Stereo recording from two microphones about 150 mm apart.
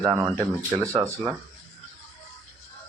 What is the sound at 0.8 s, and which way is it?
Speech, 20° right (ahead or behind).